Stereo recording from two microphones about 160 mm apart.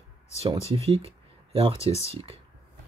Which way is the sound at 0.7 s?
40° right (ahead or behind).